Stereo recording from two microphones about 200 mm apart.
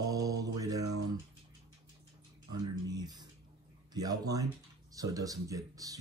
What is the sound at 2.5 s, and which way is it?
Speech, 20° right (ahead or behind).